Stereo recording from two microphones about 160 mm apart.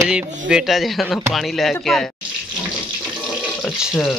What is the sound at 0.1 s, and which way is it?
Speech, 5° right (ahead or behind).